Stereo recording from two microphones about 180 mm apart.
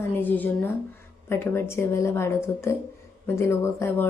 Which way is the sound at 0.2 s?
10° left (ahead or behind).